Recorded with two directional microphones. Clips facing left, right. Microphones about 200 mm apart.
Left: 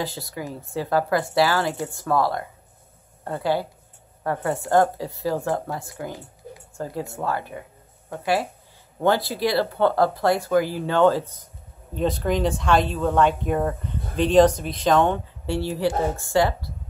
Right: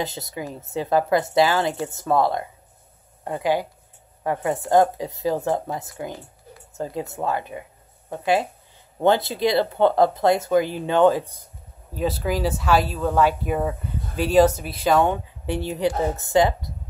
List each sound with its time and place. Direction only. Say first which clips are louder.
0.0 s speech: right 1 dB; 20° right (ahead or behind)
11.9 s speech: left 1 dB; 5° right (ahead or behind)